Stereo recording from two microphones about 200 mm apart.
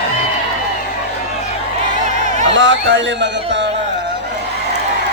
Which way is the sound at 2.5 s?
65° right (ahead or behind).